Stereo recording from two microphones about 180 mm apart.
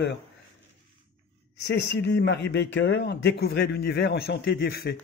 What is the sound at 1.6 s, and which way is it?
A man's voice, 75° left (ahead or behind).